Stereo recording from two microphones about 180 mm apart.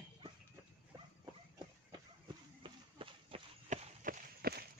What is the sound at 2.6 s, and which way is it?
Run, 30° right (ahead or behind).